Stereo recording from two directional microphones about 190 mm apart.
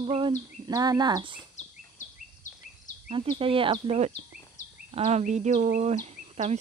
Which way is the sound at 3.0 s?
30° right (ahead or behind).